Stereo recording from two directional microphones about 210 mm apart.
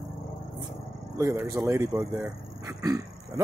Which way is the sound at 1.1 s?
15° right (ahead or behind).